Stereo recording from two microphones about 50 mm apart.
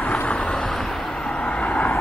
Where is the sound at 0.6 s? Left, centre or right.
Centre; by 2.0 s left.